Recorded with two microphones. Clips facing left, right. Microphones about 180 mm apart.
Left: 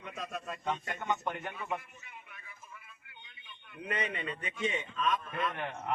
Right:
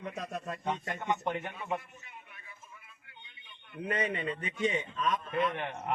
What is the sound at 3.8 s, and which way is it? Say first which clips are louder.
A man's voice: right 4 dB; 30° right (ahead or behind).